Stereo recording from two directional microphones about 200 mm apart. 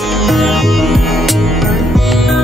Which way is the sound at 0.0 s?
Centre (ahead or behind).